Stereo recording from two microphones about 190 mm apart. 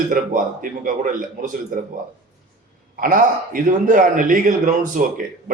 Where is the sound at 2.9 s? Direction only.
45° right (ahead or behind).